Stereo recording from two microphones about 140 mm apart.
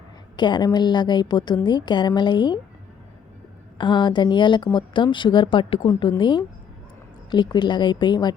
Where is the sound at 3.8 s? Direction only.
35° left (ahead or behind).